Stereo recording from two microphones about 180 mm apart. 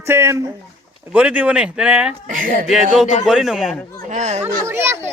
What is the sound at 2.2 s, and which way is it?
Speech, 50° right (ahead or behind).